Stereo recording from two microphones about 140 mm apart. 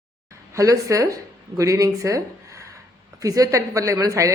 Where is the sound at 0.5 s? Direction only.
25° right (ahead or behind).